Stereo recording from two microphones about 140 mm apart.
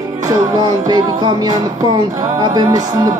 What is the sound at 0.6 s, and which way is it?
Speech, 30° right (ahead or behind).